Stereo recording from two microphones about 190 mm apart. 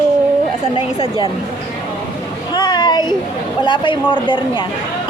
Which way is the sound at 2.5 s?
25° left (ahead or behind).